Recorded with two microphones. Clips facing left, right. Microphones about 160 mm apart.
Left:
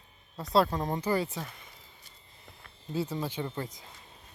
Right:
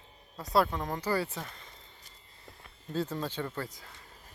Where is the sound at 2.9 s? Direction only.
10° left (ahead or behind).